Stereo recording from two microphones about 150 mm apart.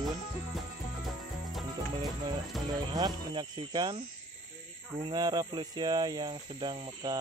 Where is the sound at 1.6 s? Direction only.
25° right (ahead or behind).